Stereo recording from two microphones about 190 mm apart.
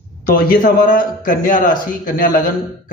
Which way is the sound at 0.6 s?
45° left (ahead or behind).